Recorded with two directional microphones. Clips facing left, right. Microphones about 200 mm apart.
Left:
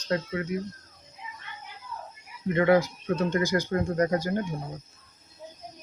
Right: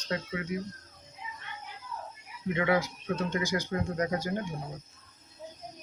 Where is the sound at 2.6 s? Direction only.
45° left (ahead or behind).